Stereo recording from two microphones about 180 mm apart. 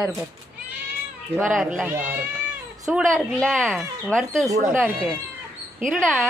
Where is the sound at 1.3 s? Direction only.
10° right (ahead or behind).